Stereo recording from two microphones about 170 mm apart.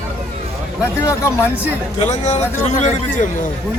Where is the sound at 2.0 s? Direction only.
45° left (ahead or behind).